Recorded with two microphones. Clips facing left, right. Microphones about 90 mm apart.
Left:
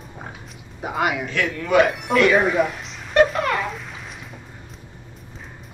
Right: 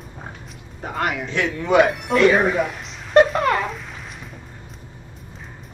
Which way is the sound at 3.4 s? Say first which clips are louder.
Right 3 dB; 35° right (ahead or behind).